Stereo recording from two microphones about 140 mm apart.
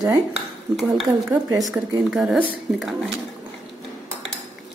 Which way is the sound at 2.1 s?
5° right (ahead or behind).